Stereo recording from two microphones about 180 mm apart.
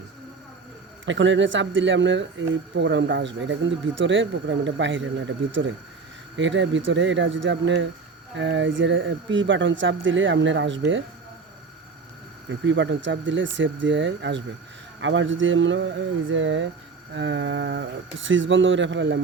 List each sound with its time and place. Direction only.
1.0 s speech: 90° right
12.5 s speech: 90° right